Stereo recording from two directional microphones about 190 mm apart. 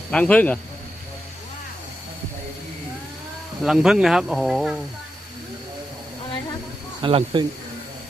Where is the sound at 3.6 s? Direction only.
5° right (ahead or behind).